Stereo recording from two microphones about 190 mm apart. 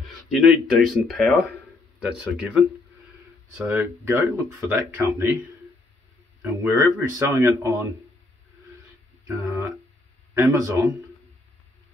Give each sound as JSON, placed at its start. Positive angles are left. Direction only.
{"t": 0.3, "sound": "speech", "side_deg": 0}
{"t": 6.4, "sound": "speech", "side_deg": -10}
{"t": 9.3, "sound": "speech", "side_deg": -15}